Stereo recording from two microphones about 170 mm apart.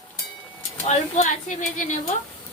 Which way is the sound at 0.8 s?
45° left (ahead or behind).